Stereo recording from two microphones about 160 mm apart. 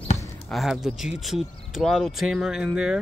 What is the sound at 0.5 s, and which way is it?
Speech, centre (ahead or behind).